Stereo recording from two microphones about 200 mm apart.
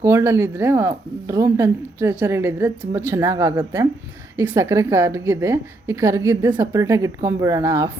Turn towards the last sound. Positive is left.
turn(degrees=-15)  # may be behind; listen again after turning